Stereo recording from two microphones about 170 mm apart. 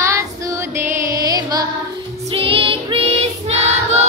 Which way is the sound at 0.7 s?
15° right (ahead or behind).